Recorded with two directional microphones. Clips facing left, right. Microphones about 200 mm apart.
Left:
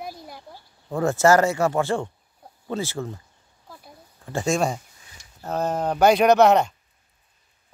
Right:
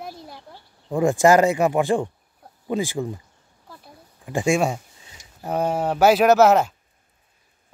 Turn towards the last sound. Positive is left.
turn(degrees=-5)  # may be behind; listen again after turning